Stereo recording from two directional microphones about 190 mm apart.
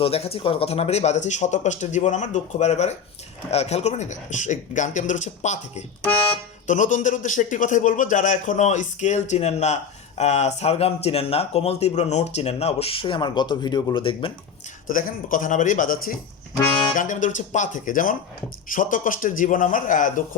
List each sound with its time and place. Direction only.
0.0 s speech: 30° left (ahead or behind)
14.8 s a man's voice: 45° left (ahead or behind)